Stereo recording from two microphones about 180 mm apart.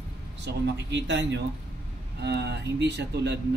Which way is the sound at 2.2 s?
70° right (ahead or behind).